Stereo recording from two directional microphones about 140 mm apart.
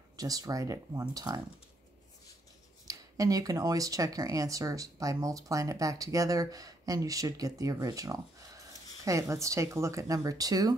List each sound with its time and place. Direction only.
0.2 s speech: 25° right (ahead or behind)
2.9 s speech: 25° right (ahead or behind)